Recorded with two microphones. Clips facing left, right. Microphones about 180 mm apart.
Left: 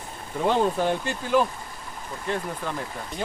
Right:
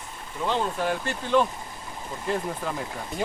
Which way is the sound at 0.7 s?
25° left (ahead or behind).